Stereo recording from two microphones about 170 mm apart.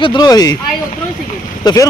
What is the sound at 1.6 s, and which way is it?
Speech, 25° left (ahead or behind).